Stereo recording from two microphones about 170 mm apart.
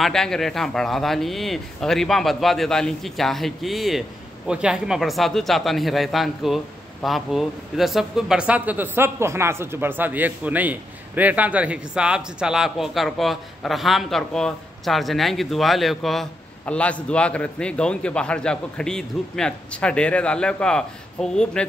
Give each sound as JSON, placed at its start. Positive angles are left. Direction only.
{"t": 0.0, "sound": "speech", "side_deg": 5}